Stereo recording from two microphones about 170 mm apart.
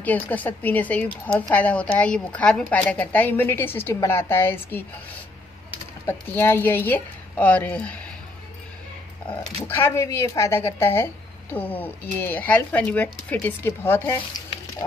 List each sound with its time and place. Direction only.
0.0 s a woman's voice: 10° left (ahead or behind)
6.0 s a woman's voice: 10° left (ahead or behind)
9.7 s a woman's voice: 15° left (ahead or behind)
14.8 s a sound: 20° left (ahead or behind)